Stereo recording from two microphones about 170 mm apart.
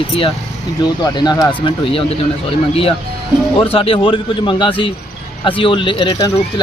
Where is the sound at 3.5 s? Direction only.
30° left (ahead or behind).